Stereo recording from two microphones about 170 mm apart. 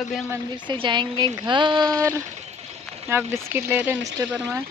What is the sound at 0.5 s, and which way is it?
Speech, 30° right (ahead or behind).